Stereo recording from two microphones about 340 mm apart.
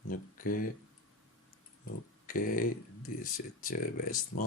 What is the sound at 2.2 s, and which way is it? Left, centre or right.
Speech, left.